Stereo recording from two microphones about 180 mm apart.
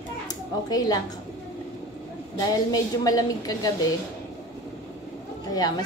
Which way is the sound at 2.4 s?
20° left (ahead or behind).